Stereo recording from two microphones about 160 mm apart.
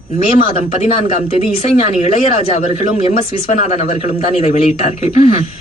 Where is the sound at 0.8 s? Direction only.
40° left (ahead or behind).